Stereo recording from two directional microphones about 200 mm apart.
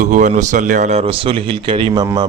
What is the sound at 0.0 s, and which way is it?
Speech, 40° right (ahead or behind).